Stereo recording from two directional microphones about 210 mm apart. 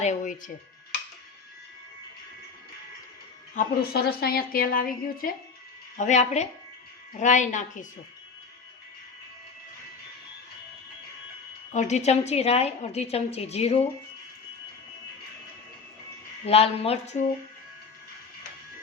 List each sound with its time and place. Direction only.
0.0 s speech: 35° left (ahead or behind)
3.5 s a woman's voice: 40° left (ahead or behind)
11.7 s a woman's voice: 35° left (ahead or behind)
16.5 s a woman's voice: 30° left (ahead or behind)